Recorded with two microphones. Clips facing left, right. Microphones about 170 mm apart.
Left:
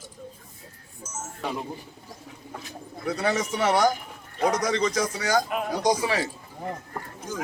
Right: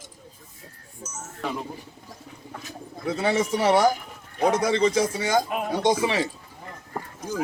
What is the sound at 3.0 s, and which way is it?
Speech, 25° right (ahead or behind).